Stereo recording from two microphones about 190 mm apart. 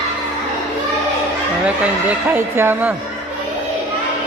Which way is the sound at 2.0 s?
10° right (ahead or behind).